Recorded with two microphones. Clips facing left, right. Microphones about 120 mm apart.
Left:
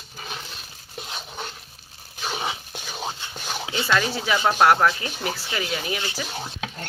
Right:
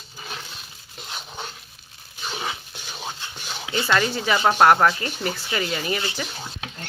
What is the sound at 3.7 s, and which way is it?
Speech, centre (ahead or behind).